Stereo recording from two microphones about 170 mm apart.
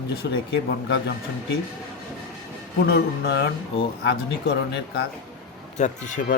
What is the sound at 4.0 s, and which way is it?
Speech, 75° left (ahead or behind).